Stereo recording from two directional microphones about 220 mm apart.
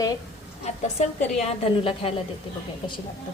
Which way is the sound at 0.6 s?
30° left (ahead or behind).